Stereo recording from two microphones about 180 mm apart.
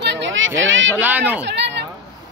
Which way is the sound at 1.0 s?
10° right (ahead or behind).